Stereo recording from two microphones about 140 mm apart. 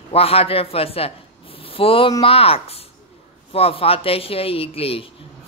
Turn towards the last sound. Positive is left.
turn(degrees=45)  # may be behind; listen again after turning